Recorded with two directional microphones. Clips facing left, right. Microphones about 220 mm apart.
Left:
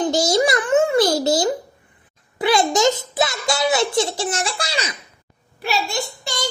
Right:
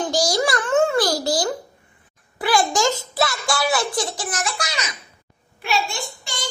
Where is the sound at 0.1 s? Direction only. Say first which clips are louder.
Left 3 dB; 25° left (ahead or behind).